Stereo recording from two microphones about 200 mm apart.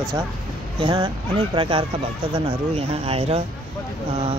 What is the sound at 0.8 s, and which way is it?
Speech, 20° right (ahead or behind).